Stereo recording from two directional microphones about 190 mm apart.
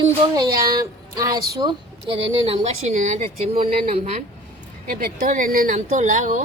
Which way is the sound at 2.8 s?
40° right (ahead or behind).